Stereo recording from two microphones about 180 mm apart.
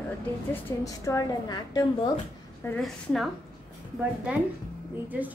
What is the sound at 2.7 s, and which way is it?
A woman's voice, centre (ahead or behind).